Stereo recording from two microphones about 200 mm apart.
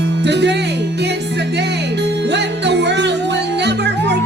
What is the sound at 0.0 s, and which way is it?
Music, 60° right (ahead or behind).